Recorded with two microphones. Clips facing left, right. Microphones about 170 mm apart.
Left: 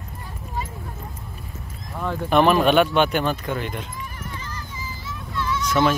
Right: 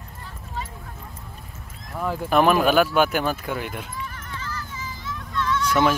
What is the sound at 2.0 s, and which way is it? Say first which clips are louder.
Speech: left 1 dB; 5° right (ahead or behind).